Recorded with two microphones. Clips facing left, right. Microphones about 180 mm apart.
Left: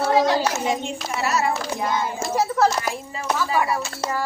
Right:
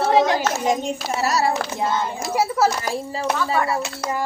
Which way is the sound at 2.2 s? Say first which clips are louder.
Even; 10° right (ahead or behind).